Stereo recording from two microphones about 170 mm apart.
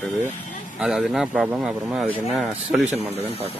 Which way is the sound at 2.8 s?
40° right (ahead or behind).